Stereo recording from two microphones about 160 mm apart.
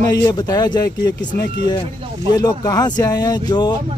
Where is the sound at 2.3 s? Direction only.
25° left (ahead or behind).